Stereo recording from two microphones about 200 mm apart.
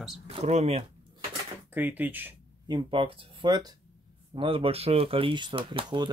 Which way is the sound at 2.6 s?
25° right (ahead or behind).